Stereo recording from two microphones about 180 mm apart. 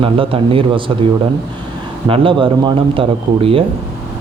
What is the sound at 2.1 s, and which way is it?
A man's voice, 30° right (ahead or behind).